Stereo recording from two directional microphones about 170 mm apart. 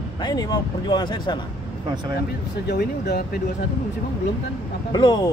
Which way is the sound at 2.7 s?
75° left (ahead or behind).